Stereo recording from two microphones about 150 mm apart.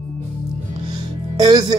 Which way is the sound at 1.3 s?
30° right (ahead or behind).